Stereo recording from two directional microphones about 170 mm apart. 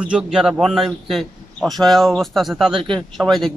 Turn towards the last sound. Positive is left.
turn(degrees=0)  # may be behind; listen again after turning